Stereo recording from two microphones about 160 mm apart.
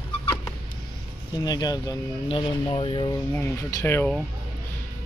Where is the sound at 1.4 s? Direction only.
25° left (ahead or behind).